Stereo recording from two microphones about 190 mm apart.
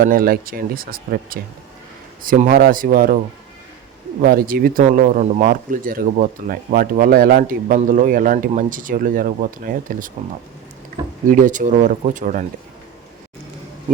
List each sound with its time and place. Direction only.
0.0 s speech: 50° right (ahead or behind)
4.2 s speech: 50° right (ahead or behind)
11.3 s speech: 40° right (ahead or behind)